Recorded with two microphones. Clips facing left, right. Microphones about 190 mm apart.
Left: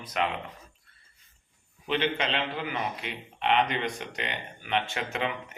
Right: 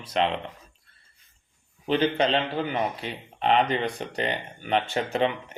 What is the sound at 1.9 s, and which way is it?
A man's voice, 35° right (ahead or behind).